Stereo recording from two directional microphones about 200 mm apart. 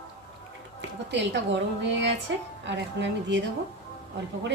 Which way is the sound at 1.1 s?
65° right (ahead or behind).